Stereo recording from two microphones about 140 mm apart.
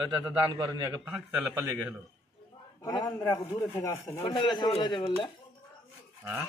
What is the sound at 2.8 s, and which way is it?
Speech, 30° left (ahead or behind).